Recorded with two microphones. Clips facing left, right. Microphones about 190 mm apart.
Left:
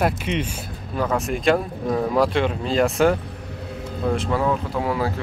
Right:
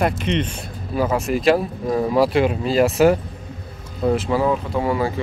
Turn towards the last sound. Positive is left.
turn(degrees=0)  # may be behind; listen again after turning